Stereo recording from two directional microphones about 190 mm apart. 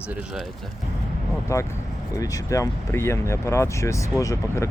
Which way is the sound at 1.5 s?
15° left (ahead or behind).